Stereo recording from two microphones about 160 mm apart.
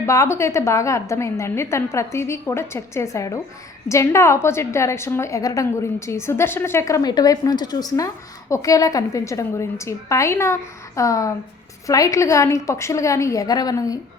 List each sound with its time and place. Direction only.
0.0 s a woman's voice: 15° left (ahead or behind)